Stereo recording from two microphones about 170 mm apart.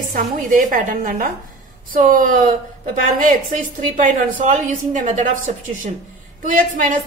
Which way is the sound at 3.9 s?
50° right (ahead or behind).